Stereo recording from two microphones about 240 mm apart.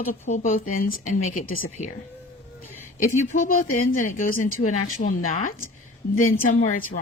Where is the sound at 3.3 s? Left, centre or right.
Left.